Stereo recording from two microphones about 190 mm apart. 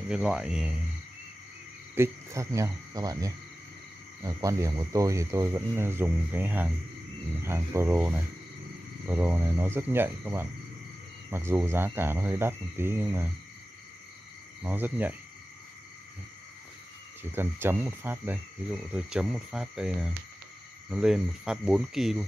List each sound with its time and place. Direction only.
0.1 s speech: 5° right (ahead or behind)
2.0 s speech: 15° right (ahead or behind)
14.6 s speech: 10° right (ahead or behind)
17.2 s speech: 10° right (ahead or behind)